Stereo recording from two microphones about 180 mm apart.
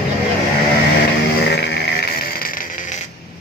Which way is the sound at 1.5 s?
65° left (ahead or behind).